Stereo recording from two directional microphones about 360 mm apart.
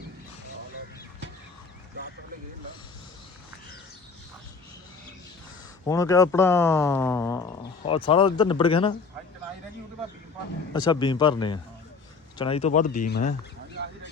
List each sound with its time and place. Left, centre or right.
5.8 s speech: centre
10.7 s speech: centre